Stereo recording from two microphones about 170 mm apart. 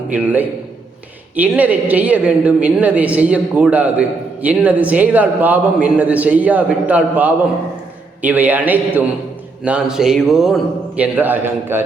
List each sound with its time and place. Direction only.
0.1 s a woman's voice: 10° right (ahead or behind)